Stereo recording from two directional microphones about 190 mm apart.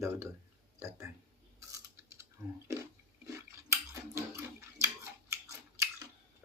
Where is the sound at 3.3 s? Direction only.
15° right (ahead or behind).